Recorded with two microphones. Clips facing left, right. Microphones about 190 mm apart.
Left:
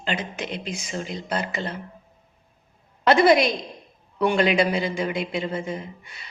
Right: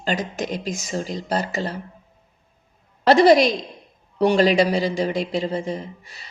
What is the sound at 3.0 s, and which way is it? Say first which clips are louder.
Speech: right 3 dB; 35° right (ahead or behind).